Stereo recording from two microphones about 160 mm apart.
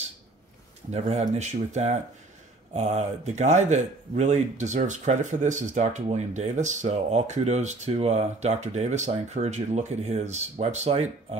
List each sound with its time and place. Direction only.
0.9 s speech: 45° right (ahead or behind)